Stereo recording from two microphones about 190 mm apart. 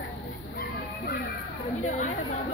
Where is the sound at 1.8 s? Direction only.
35° left (ahead or behind).